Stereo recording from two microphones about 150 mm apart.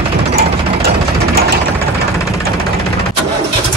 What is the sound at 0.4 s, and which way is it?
Jackhammer, 90° right.